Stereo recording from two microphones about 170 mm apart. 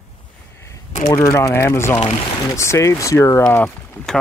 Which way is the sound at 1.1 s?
15° left (ahead or behind).